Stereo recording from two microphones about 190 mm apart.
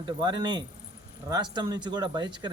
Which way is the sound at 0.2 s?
20° right (ahead or behind).